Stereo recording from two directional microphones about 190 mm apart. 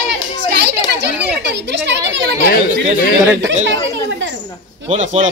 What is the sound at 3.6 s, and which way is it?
Speech, 75° right (ahead or behind).